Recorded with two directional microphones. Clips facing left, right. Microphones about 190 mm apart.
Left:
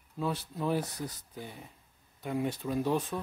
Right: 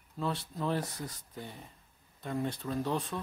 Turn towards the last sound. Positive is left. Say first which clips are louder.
# left 3 dB
turn(degrees=10)  # may be behind; listen again after turning